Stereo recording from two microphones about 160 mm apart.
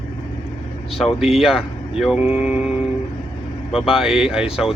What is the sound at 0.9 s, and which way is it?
Speech, centre (ahead or behind).